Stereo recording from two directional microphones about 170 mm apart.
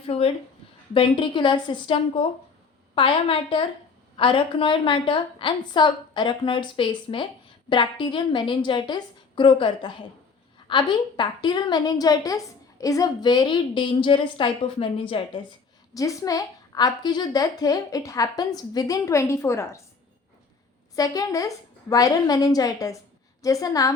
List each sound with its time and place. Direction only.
0.1 s a woman's voice: 40° left (ahead or behind)
16.0 s a woman's voice: 20° left (ahead or behind)
20.9 s a woman's voice: 20° left (ahead or behind)